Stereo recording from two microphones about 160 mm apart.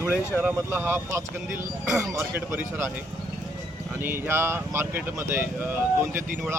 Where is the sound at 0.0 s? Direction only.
15° right (ahead or behind).